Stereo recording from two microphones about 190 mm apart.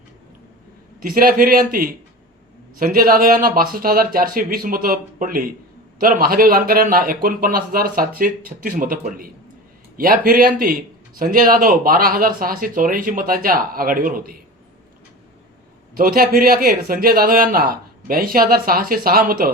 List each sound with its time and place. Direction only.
0.9 s speech: 50° right (ahead or behind)
16.0 s speech: 50° right (ahead or behind)